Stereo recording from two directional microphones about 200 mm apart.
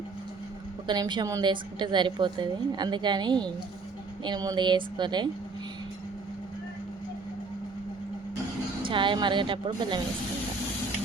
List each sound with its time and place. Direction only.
0.9 s a woman's voice: 20° right (ahead or behind)
8.8 s a woman's voice: 25° right (ahead or behind)